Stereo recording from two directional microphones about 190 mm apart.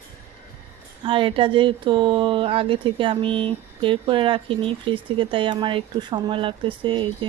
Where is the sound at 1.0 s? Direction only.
30° right (ahead or behind).